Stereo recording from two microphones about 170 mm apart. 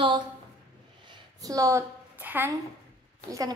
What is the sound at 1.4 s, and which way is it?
A woman's voice, 20° right (ahead or behind).